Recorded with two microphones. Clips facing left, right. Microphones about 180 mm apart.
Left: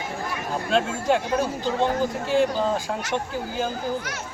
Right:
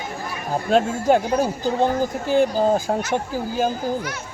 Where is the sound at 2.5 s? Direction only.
40° right (ahead or behind).